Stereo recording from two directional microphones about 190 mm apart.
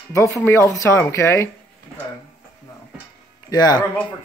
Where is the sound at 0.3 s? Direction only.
10° left (ahead or behind).